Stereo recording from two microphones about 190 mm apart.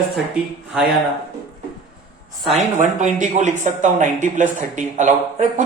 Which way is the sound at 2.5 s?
40° right (ahead or behind).